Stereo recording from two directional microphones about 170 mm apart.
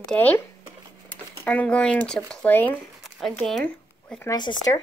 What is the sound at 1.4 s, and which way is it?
Speech, 10° left (ahead or behind).